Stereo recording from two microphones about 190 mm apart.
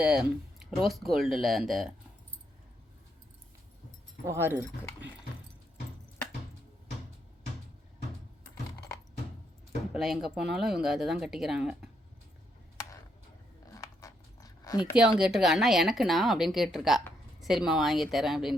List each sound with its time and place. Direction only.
0.0 s a woman's voice: 5° right (ahead or behind)
4.3 s speech: 10° right (ahead or behind)
9.9 s a woman's voice: centre (ahead or behind)
13.7 s a sound: 15° left (ahead or behind)
14.9 s a woman's voice: 5° right (ahead or behind)